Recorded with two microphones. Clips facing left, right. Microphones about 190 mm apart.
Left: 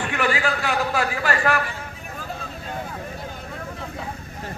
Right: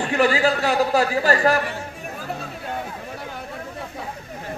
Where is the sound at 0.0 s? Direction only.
35° right (ahead or behind).